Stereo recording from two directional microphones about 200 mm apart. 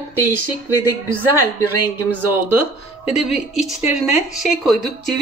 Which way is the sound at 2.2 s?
10° right (ahead or behind).